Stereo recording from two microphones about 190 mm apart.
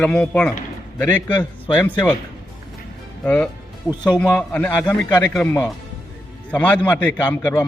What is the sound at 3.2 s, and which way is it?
A man's voice, 5° left (ahead or behind).